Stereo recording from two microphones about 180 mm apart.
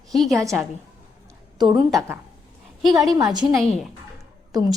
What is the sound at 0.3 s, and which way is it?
A woman's voice, 15° right (ahead or behind).